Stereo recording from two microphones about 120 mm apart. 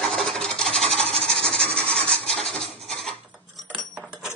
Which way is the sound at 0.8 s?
60° right (ahead or behind).